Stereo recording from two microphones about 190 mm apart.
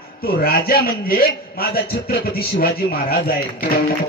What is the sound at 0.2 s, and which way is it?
A man's voice, 55° left (ahead or behind).